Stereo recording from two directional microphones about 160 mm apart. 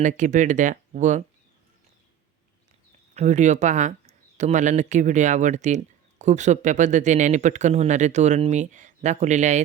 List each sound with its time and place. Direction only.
0.0 s speech: 50° right (ahead or behind)
3.2 s speech: 50° right (ahead or behind)